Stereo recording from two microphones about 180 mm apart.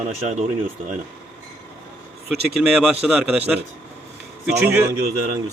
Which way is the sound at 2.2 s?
5° right (ahead or behind).